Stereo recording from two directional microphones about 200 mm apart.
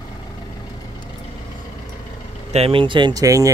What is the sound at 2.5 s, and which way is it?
Speech, 30° right (ahead or behind).